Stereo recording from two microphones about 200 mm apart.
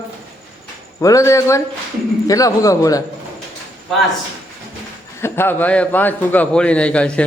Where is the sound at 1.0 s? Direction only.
15° left (ahead or behind).